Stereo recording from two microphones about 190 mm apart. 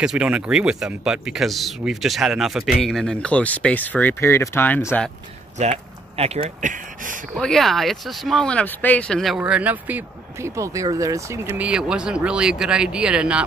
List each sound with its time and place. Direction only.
0.0 s speech: 5° right (ahead or behind)
5.6 s speech: 35° right (ahead or behind)
7.3 s speech: centre (ahead or behind)